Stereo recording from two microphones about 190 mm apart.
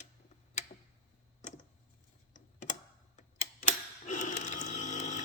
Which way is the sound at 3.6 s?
40° left (ahead or behind).